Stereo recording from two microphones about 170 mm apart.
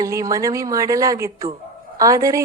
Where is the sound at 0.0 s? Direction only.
20° right (ahead or behind).